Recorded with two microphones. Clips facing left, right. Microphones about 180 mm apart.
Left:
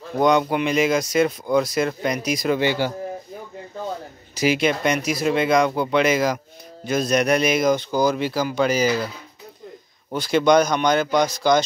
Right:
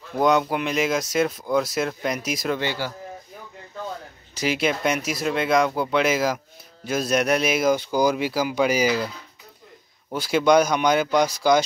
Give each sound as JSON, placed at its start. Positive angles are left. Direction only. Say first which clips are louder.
{"t": 0.2, "sound": "speech", "louder": "left 2 dB", "side_deg": 0}
{"t": 2.6, "sound": "a man's voice", "louder": "left 6 dB", "side_deg": 15}
{"t": 4.4, "sound": "speech", "louder": "left 3 dB", "side_deg": 0}
{"t": 10.1, "sound": "speech", "louder": "left 1 dB", "side_deg": -5}